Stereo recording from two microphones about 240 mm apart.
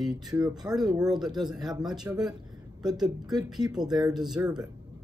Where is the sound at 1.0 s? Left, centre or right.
Centre.